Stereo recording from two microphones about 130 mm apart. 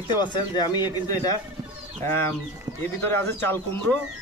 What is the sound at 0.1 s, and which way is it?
Speech, 35° left (ahead or behind).